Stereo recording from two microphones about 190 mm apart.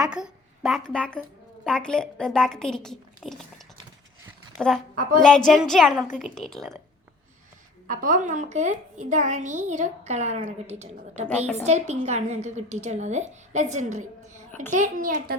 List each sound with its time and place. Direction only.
0.0 s a woman's voice: 5° right (ahead or behind)
4.5 s a woman's voice: 5° left (ahead or behind)
4.9 s a child's voice: 45° right (ahead or behind)
5.5 s a woman's voice: centre (ahead or behind)
7.9 s a woman's voice: 40° right (ahead or behind)